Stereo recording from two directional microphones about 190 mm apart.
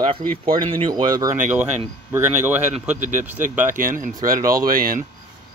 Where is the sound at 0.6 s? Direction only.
25° right (ahead or behind).